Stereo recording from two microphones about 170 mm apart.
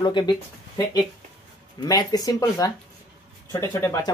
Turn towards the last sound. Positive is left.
turn(degrees=15)  # may be behind; listen again after turning